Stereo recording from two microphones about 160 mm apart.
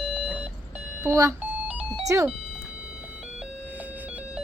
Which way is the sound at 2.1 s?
15° right (ahead or behind).